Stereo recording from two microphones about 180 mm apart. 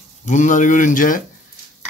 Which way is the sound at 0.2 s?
45° left (ahead or behind).